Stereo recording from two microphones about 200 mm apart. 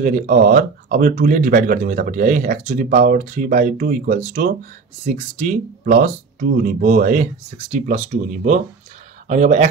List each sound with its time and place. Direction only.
0.0 s speech: 40° right (ahead or behind)